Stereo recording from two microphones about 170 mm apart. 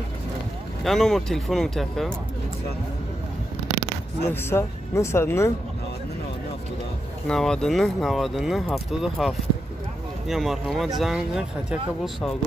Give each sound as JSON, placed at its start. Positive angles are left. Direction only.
{"t": 0.8, "sound": "speech", "side_deg": 0}
{"t": 4.3, "sound": "speech", "side_deg": 15}
{"t": 7.2, "sound": "speech", "side_deg": 5}